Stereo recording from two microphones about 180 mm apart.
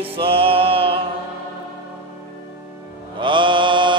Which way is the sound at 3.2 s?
25° right (ahead or behind).